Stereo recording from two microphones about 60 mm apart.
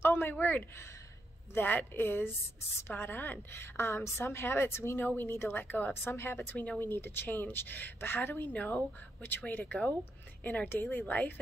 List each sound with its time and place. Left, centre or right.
0.0 s a woman's voice: left
5.5 s a woman's voice: left
6.0 s a woman's voice: left